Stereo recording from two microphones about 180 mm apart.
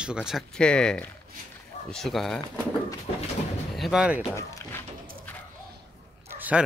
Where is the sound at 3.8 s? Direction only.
5° right (ahead or behind).